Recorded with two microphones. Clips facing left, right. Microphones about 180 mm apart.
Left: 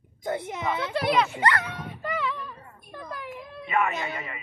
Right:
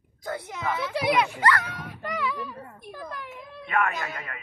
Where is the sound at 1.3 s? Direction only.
25° left (ahead or behind).